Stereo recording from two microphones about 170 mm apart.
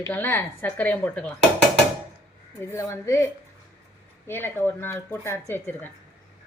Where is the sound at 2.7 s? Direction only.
15° left (ahead or behind).